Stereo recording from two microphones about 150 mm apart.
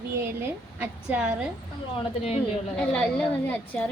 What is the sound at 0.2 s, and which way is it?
A woman's voice, 15° right (ahead or behind).